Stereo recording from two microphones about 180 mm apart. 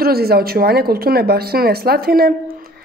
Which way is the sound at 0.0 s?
60° right (ahead or behind).